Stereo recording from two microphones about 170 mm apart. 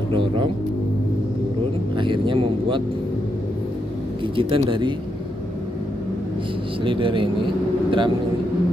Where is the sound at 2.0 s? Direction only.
30° right (ahead or behind).